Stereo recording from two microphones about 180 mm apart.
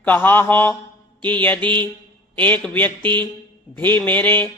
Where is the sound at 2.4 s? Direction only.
10° left (ahead or behind).